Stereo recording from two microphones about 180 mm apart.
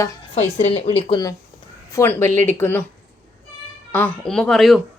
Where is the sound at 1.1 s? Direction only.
20° left (ahead or behind).